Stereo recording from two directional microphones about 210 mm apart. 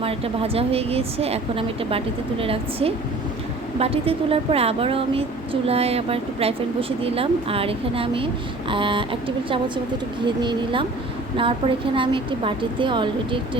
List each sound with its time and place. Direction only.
0.0 s a woman's voice: 25° right (ahead or behind)